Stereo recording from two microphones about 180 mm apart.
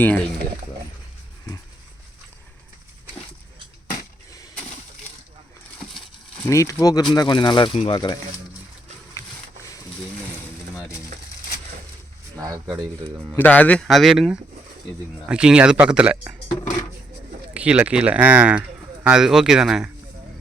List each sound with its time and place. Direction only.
0.0 s speech: 10° left (ahead or behind)
6.5 s speech: 15° left (ahead or behind)
12.4 s speech: 20° right (ahead or behind)
13.3 s speech: 10° left (ahead or behind); by 16.4 s 5° right (ahead or behind)
17.5 s speech: 5° right (ahead or behind)